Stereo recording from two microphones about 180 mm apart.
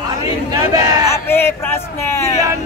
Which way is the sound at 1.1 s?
15° left (ahead or behind).